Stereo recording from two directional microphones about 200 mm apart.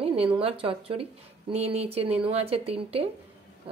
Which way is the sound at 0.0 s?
30° right (ahead or behind).